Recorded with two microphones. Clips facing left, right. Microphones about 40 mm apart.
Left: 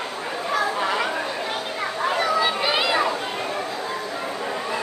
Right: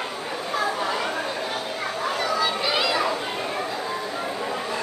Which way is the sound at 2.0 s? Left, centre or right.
Left.